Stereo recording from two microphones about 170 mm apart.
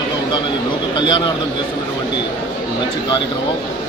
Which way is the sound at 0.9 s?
25° left (ahead or behind).